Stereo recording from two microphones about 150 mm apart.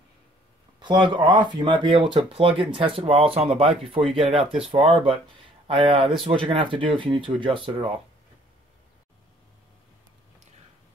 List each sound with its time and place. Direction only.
0.7 s speech: 30° right (ahead or behind)
4.4 s speech: 5° right (ahead or behind)
4.6 s speech: 35° right (ahead or behind)